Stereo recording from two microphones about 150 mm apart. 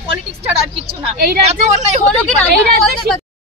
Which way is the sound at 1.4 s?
50° right (ahead or behind).